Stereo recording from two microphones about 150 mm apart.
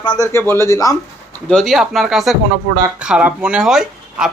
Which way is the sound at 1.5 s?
Centre (ahead or behind).